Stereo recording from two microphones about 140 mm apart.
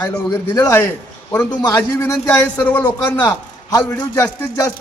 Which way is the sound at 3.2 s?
25° left (ahead or behind).